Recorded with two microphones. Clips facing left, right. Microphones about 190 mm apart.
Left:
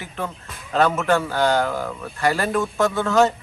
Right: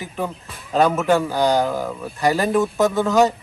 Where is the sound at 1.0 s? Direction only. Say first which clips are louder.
Right 2 dB; 15° right (ahead or behind).